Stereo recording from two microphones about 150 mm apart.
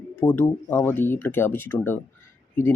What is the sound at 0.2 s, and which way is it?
Speech, 15° left (ahead or behind).